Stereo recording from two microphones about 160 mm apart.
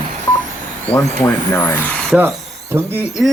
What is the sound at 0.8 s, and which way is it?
Speech, 10° left (ahead or behind).